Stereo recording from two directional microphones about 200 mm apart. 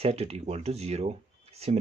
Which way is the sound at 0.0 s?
30° right (ahead or behind).